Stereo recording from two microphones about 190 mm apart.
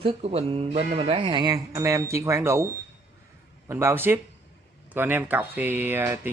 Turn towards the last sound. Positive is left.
turn(degrees=-10)  # may be behind; listen again after turning